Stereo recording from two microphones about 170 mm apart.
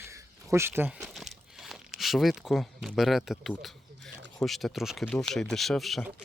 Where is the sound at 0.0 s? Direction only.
15° right (ahead or behind); by 3.7 s centre (ahead or behind).